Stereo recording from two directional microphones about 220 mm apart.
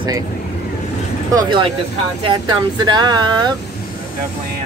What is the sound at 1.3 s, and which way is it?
Speech, 20° right (ahead or behind).